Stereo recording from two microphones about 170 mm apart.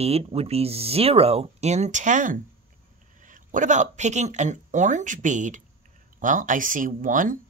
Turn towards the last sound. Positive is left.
turn(degrees=-50)  # may be behind; listen again after turning